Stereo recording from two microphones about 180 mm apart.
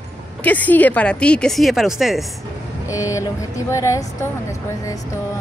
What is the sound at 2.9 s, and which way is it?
Speech, 15° left (ahead or behind).